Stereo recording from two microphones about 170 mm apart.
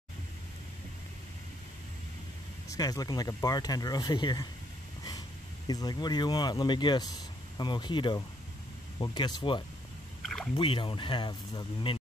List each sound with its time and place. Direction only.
2.7 s speech: 20° left (ahead or behind)
5.7 s speech: 25° left (ahead or behind)
10.2 s rowboat: 5° left (ahead or behind)
10.5 s speech: 30° left (ahead or behind)